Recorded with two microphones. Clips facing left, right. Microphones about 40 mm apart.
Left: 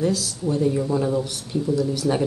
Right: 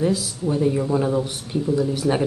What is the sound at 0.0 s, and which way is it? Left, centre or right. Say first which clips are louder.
Speech: right 1 dB; centre.